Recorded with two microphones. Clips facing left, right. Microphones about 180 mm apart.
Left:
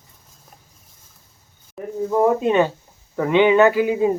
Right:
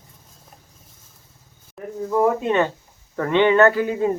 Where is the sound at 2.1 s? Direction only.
15° left (ahead or behind).